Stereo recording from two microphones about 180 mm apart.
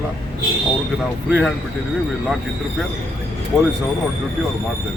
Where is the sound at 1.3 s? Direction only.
5° right (ahead or behind).